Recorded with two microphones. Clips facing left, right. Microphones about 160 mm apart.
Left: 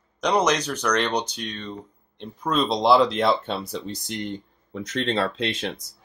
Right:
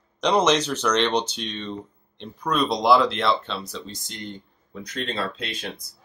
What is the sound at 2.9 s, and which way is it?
Speech, 45° left (ahead or behind).